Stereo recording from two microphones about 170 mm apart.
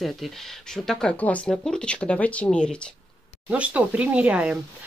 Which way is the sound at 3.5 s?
5° right (ahead or behind).